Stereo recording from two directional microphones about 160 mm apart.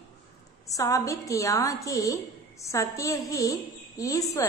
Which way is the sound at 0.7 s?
20° left (ahead or behind).